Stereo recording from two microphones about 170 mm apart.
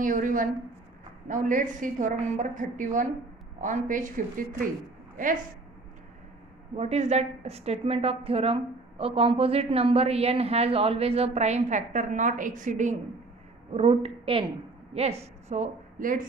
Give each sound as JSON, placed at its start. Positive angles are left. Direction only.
{"t": 0.0, "sound": "a woman's voice", "side_deg": -50}
{"t": 6.8, "sound": "a woman's voice", "side_deg": -40}
{"t": 13.7, "sound": "a woman's voice", "side_deg": -35}